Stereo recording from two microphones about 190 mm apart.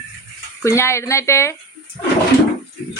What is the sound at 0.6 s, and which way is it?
Speech, 15° left (ahead or behind).